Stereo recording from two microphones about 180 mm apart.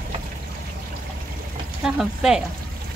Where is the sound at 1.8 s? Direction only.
5° right (ahead or behind).